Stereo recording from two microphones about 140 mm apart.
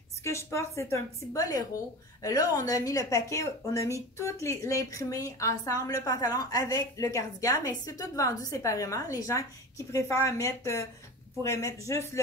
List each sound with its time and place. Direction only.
0.2 s a woman's voice: 20° left (ahead or behind)